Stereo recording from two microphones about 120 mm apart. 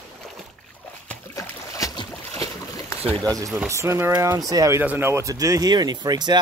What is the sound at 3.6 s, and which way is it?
Speech, 25° right (ahead or behind).